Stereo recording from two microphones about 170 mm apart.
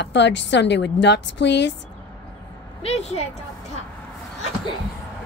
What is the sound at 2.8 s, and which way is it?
Speech, 40° left (ahead or behind).